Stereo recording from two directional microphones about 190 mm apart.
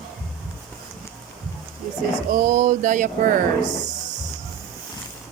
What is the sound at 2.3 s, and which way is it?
Speech, 45° right (ahead or behind).